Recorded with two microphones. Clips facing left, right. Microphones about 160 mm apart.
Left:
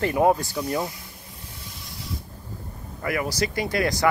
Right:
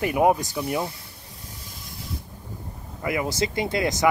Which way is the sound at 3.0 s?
20° right (ahead or behind).